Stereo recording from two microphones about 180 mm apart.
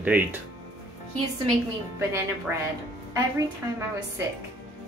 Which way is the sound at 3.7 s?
15° right (ahead or behind).